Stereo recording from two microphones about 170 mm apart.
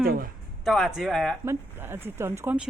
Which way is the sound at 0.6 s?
Centre (ahead or behind).